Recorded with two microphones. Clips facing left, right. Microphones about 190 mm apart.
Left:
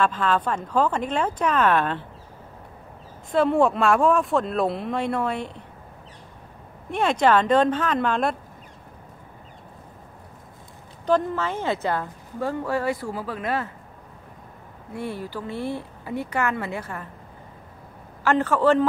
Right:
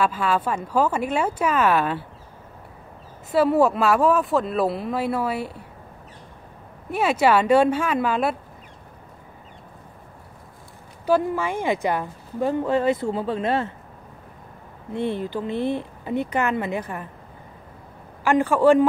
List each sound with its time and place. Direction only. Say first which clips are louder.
0.0 s speech: even; 10° right (ahead or behind)
3.3 s speech: right 1 dB; 5° right (ahead or behind)
6.9 s speech: right 1 dB; 5° right (ahead or behind)
11.1 s speech: right 1 dB; 10° right (ahead or behind); by 13.7 s 25° right (ahead or behind)
14.9 s speech: right 6 dB; 25° right (ahead or behind)
18.2 s speech: right 3 dB; 15° right (ahead or behind)